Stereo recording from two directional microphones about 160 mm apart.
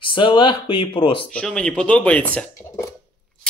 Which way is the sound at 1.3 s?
5° left (ahead or behind).